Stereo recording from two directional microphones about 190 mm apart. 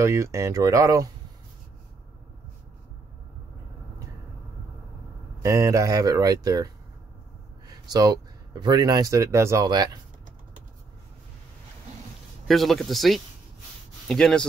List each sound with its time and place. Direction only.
0.0 s speech: 15° right (ahead or behind)
5.4 s speech: 15° right (ahead or behind)
12.4 s speech: centre (ahead or behind)